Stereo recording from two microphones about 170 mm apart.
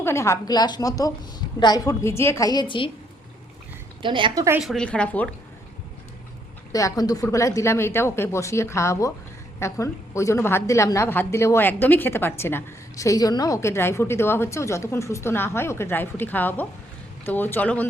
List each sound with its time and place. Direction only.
0.0 s a woman's voice: 15° left (ahead or behind)
4.0 s a woman's voice: 30° right (ahead or behind)
4.6 s a woman's voice: 5° left (ahead or behind)
6.7 s a woman's voice: 20° left (ahead or behind)